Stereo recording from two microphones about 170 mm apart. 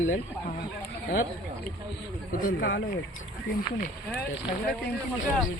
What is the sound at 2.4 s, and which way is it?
Speech, 70° left (ahead or behind).